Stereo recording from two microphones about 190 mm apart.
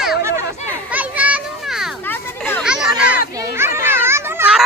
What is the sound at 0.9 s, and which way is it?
Children playing, 5° right (ahead or behind).